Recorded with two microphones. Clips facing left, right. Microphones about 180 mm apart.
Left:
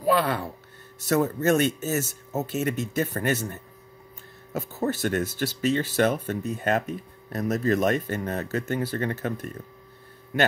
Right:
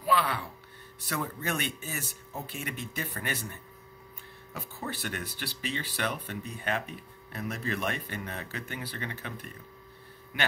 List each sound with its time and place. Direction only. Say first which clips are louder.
0.0 s speech: left 6 dB; 45° left (ahead or behind)